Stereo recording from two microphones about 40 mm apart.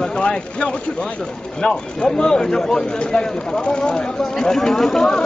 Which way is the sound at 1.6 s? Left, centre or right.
Centre.